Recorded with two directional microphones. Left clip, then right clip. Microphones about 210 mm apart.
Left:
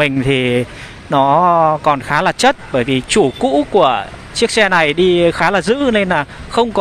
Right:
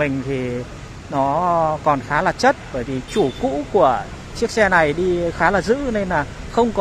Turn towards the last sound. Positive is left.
turn(degrees=25)  # may be behind; listen again after turning